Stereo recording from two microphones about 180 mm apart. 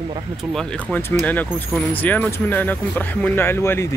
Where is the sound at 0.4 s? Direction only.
Centre (ahead or behind).